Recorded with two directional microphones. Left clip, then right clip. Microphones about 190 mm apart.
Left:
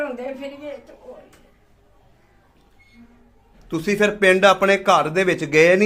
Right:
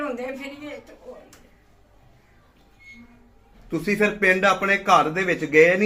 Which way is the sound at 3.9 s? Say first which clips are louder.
Left 4 dB; 50° left (ahead or behind).